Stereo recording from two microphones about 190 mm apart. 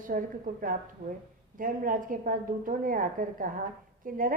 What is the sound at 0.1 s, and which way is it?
A woman's voice, 45° right (ahead or behind).